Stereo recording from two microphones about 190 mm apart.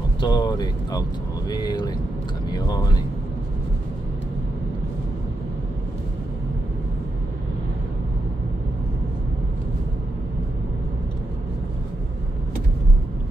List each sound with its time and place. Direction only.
0.2 s speech: 25° left (ahead or behind)